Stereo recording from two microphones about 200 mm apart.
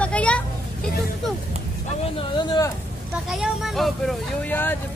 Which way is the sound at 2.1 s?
20° left (ahead or behind).